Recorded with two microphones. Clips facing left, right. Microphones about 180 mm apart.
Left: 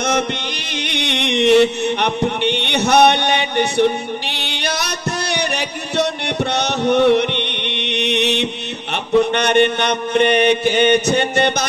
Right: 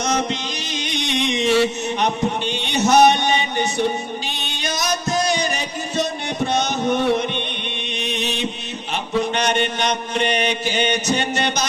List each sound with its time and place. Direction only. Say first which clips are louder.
0.0 s music: left 2 dB; 60° left (ahead or behind)
9.2 s mantra: left 5 dB; 60° left (ahead or behind)